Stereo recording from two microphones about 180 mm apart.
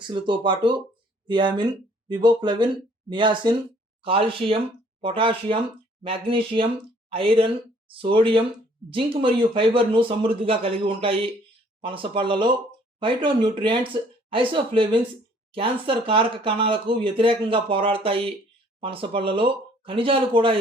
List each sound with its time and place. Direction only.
0.1 s a man's voice: 25° right (ahead or behind)
9.6 s a man's voice: 30° right (ahead or behind)